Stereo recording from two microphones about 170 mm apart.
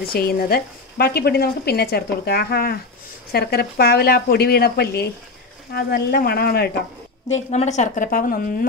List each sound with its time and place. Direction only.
0.1 s speech: 65° left (ahead or behind)
7.5 s a woman's voice: 45° left (ahead or behind)